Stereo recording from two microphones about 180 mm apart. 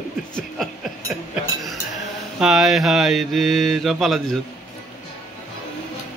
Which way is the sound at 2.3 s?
Centre (ahead or behind).